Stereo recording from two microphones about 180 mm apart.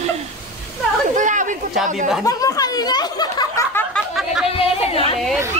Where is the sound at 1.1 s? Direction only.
45° right (ahead or behind).